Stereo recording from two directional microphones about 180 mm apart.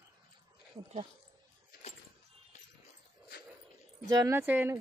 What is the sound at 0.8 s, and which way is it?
Dog, 25° right (ahead or behind).